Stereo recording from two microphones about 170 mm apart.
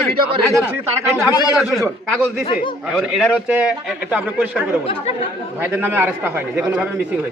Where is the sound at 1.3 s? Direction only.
20° left (ahead or behind).